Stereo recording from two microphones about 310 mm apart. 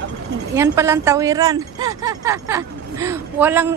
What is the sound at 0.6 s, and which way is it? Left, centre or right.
Speech, centre.